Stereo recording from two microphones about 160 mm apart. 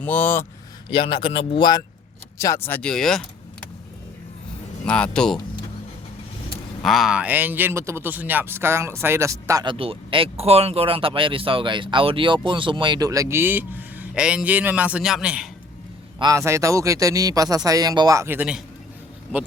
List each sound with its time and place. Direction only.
0.0 s speech: 10° left (ahead or behind)
0.9 s speech: 35° left (ahead or behind)
2.4 s speech: 15° left (ahead or behind)
4.9 s speech: 5° left (ahead or behind)
6.8 s speech: centre (ahead or behind); by 9.6 s 20° right (ahead or behind)
9.6 s speech: 35° right (ahead or behind); by 15.4 s 5° right (ahead or behind)
16.1 s speech: 25° right (ahead or behind); by 18.6 s 10° right (ahead or behind)